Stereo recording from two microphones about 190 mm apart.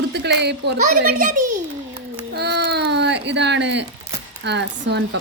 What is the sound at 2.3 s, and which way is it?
Baby cry, 60° right (ahead or behind).